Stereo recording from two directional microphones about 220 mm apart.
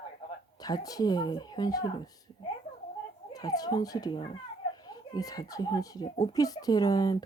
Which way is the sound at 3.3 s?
15° left (ahead or behind).